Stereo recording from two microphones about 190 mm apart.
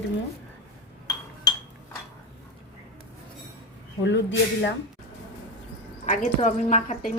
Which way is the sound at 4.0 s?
70° left (ahead or behind).